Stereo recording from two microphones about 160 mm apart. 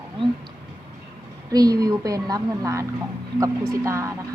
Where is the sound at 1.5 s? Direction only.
25° right (ahead or behind).